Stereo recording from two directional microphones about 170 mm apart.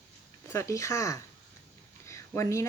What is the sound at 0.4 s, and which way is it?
Speech, 15° left (ahead or behind).